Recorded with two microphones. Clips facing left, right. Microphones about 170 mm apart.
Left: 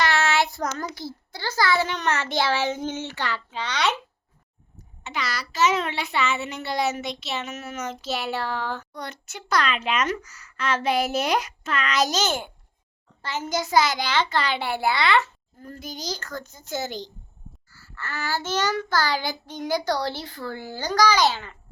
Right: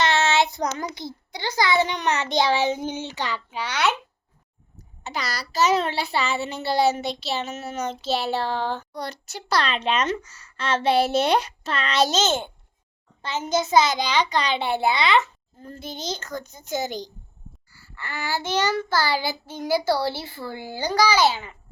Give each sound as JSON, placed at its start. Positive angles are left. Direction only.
{"t": 0.0, "sound": "a child's voice", "side_deg": -25}
{"t": 5.0, "sound": "a child's voice", "side_deg": -35}